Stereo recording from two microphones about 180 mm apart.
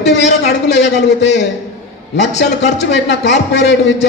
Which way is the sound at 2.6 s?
75° left (ahead or behind).